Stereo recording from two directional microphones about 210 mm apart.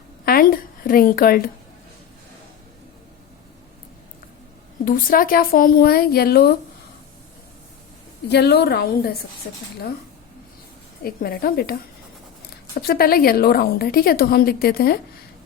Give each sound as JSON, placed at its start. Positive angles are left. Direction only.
{"t": 0.3, "sound": "a sound", "side_deg": 45}
{"t": 0.9, "sound": "a woman's voice", "side_deg": 45}
{"t": 4.9, "sound": "a woman's voice", "side_deg": 40}
{"t": 8.3, "sound": "a woman's voice", "side_deg": 50}
{"t": 11.0, "sound": "a woman's voice", "side_deg": 45}
{"t": 12.8, "sound": "a woman's voice", "side_deg": 45}